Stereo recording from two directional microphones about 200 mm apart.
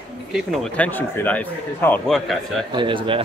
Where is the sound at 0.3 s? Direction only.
Centre (ahead or behind).